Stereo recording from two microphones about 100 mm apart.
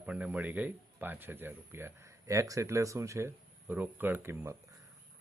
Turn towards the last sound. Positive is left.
turn(degrees=-25)  # may be behind; listen again after turning